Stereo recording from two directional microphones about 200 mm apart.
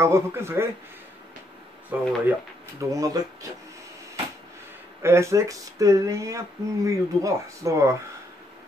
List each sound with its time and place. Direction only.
0.0 s speech: 15° right (ahead or behind)
1.9 s speech: 10° right (ahead or behind)
5.0 s speech: 15° right (ahead or behind)